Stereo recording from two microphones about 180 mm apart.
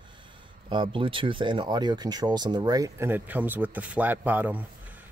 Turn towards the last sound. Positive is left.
turn(degrees=-10)  # may be behind; listen again after turning